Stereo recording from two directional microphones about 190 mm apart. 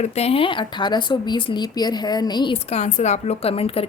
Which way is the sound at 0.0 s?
35° left (ahead or behind).